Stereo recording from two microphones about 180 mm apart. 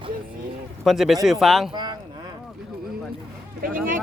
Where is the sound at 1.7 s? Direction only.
25° right (ahead or behind).